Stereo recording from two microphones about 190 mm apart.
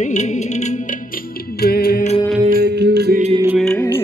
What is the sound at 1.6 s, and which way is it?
Music, 55° left (ahead or behind).